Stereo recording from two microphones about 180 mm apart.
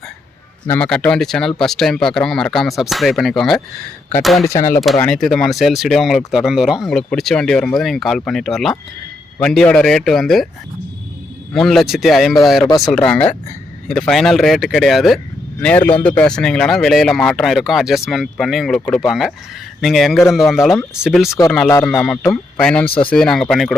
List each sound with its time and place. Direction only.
0.7 s speech: 5° left (ahead or behind)
4.4 s speech: 15° left (ahead or behind)
4.9 s speech: 5° left (ahead or behind)
11.5 s speech: centre (ahead or behind)
12.6 s speech: 20° left (ahead or behind)
12.9 s speech: 5° left (ahead or behind)